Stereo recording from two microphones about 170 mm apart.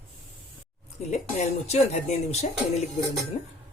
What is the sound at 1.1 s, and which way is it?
Speech, 40° left (ahead or behind).